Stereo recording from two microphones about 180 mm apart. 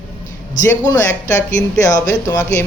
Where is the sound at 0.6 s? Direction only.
20° left (ahead or behind).